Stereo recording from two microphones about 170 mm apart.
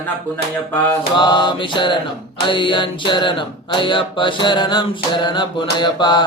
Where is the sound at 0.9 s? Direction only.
25° left (ahead or behind).